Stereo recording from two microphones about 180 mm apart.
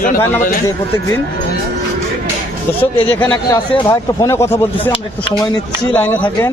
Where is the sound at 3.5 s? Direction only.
25° left (ahead or behind).